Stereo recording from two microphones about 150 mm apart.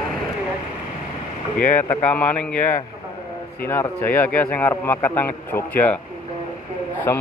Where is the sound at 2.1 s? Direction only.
10° left (ahead or behind).